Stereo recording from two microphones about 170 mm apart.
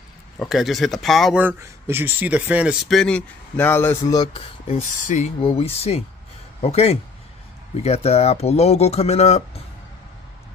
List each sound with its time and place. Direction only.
0.4 s speech: centre (ahead or behind)
1.6 s speech: 15° right (ahead or behind); by 4.3 s 20° left (ahead or behind)
4.3 s speech: 35° left (ahead or behind)